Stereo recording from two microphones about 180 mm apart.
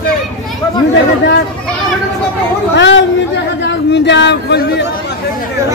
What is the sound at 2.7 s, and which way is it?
Speech, 80° left.